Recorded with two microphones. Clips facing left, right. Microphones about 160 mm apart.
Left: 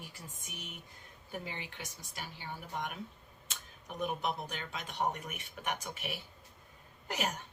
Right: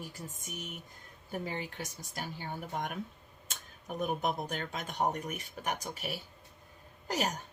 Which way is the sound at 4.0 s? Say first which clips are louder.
Right 3 dB; 45° right (ahead or behind).